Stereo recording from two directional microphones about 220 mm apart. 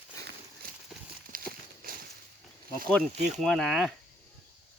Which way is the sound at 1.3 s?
40° right (ahead or behind).